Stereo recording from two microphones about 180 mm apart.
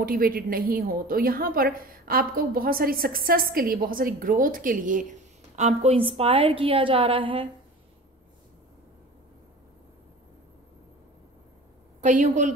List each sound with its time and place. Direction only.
0.0 s a woman's voice: 55° right (ahead or behind); by 7.4 s 30° right (ahead or behind)
12.0 s a woman's voice: 45° right (ahead or behind)